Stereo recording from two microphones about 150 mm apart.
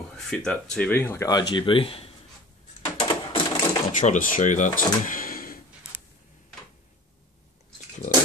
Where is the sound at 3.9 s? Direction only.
60° left (ahead or behind).